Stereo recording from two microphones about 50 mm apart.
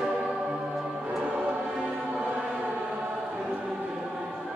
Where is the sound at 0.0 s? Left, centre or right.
Centre.